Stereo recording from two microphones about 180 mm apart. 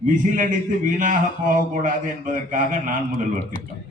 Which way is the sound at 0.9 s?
45° right (ahead or behind).